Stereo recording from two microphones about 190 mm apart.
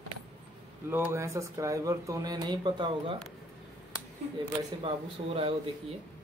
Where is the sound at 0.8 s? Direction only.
15° right (ahead or behind).